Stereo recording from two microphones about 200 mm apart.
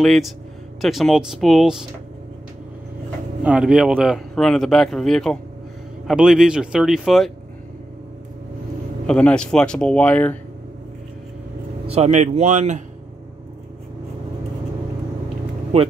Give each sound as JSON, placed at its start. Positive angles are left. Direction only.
{"t": 0.0, "sound": "speech", "side_deg": 0}
{"t": 3.4, "sound": "speech", "side_deg": -5}
{"t": 9.0, "sound": "speech", "side_deg": 5}
{"t": 11.8, "sound": "speech", "side_deg": -30}
{"t": 15.7, "sound": "speech", "side_deg": -30}